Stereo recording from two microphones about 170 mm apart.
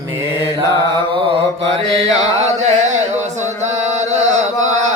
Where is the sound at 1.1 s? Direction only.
30° right (ahead or behind).